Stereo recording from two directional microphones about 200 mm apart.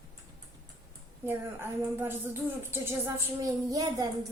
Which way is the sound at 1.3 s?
10° right (ahead or behind).